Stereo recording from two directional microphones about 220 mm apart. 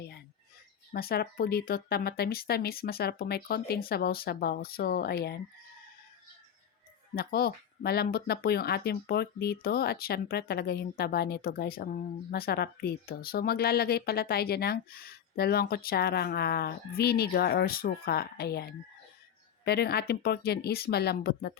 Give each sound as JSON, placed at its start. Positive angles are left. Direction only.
{"t": 0.9, "sound": "speech", "side_deg": 45}
{"t": 7.2, "sound": "speech", "side_deg": 45}